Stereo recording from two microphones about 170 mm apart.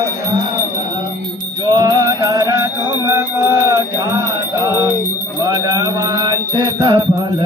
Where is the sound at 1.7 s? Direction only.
25° right (ahead or behind).